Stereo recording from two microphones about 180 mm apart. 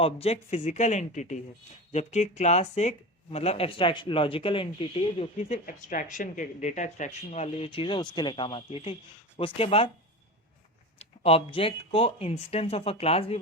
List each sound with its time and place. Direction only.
0.0 s speech: 35° left (ahead or behind)
5.6 s speech: 45° left (ahead or behind)
11.2 s speech: 35° left (ahead or behind)